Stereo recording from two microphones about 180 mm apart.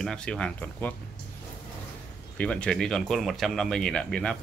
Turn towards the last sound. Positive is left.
turn(degrees=5)  # may be behind; listen again after turning